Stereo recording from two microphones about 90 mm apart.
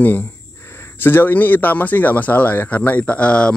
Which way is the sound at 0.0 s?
20° left (ahead or behind).